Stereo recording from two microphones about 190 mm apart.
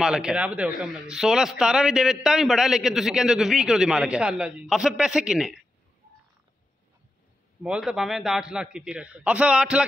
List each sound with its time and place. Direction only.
0.0 s a man's voice: 5° right (ahead or behind)
7.6 s a man's voice: 5° right (ahead or behind)